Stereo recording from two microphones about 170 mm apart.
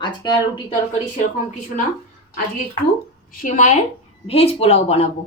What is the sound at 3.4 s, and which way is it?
Speech, 50° left (ahead or behind).